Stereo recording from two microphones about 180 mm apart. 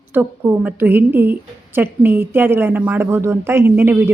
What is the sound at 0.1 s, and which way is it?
A woman's voice, 10° right (ahead or behind).